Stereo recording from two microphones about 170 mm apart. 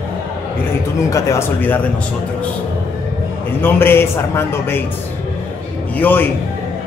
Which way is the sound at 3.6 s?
15° left (ahead or behind).